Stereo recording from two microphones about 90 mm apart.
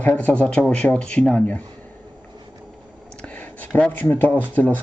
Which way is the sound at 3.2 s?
15° left (ahead or behind).